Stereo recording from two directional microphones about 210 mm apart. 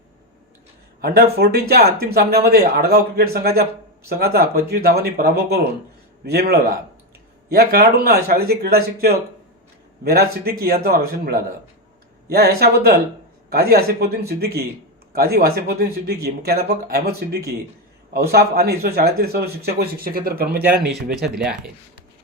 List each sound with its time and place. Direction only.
1.0 s speech: 45° right (ahead or behind)
21.3 s speech: 5° right (ahead or behind)